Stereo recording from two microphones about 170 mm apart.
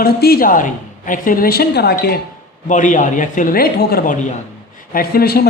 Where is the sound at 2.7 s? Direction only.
50° left (ahead or behind); by 5.5 s 65° left (ahead or behind).